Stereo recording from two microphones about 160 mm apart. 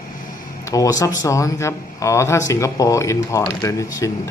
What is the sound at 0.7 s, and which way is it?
Speech, 20° left (ahead or behind).